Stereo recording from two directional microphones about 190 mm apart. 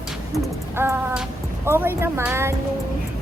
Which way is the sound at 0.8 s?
10° right (ahead or behind).